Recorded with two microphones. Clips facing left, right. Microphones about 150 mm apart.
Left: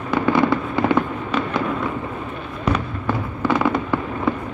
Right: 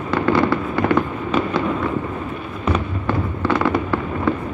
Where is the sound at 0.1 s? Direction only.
20° left (ahead or behind).